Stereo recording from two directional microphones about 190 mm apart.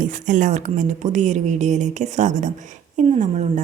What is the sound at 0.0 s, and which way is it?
Speech, 40° right (ahead or behind).